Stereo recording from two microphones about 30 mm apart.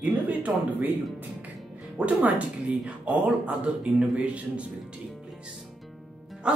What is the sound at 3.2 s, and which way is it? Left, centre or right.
Speech, right.